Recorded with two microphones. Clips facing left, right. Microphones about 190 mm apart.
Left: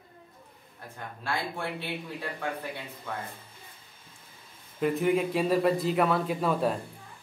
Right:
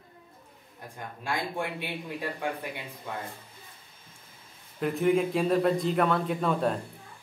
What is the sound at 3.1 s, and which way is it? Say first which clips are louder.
Speech: even; 15° right (ahead or behind).